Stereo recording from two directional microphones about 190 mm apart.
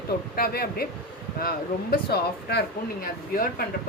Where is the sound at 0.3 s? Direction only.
50° left (ahead or behind).